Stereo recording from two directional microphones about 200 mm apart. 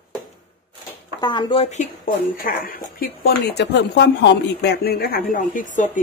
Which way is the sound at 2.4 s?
45° left (ahead or behind).